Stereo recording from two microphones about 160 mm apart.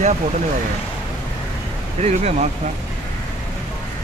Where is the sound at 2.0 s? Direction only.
45° right (ahead or behind).